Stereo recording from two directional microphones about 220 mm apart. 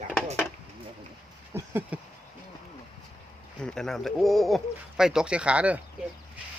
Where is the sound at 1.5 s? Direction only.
10° right (ahead or behind).